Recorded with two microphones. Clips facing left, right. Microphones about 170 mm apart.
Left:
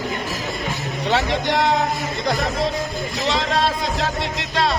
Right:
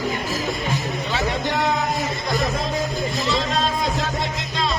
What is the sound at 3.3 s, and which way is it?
Music, 80° left.